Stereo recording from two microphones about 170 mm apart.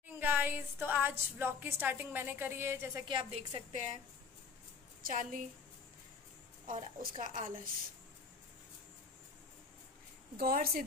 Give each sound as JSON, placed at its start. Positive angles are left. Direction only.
{"t": 0.2, "sound": "a woman's voice", "side_deg": -10}
{"t": 3.1, "sound": "a woman's voice", "side_deg": -35}
{"t": 5.0, "sound": "a woman's voice", "side_deg": -55}
{"t": 6.6, "sound": "a woman's voice", "side_deg": -50}
{"t": 10.3, "sound": "a woman's voice", "side_deg": -60}